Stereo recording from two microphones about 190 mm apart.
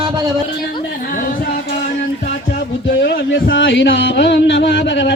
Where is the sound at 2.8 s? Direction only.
65° left (ahead or behind).